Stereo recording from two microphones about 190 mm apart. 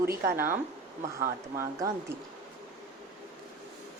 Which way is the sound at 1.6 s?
20° right (ahead or behind).